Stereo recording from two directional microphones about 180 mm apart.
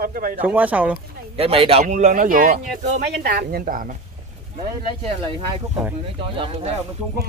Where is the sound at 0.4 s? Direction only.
10° right (ahead or behind).